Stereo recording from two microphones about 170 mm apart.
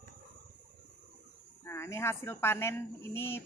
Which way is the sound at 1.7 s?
15° left (ahead or behind).